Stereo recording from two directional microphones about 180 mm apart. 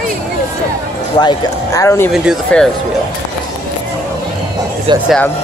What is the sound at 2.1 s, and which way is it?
Speech, centre (ahead or behind).